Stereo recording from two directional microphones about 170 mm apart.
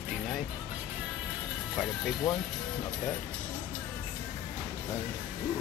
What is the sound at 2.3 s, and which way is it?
Speech, centre (ahead or behind).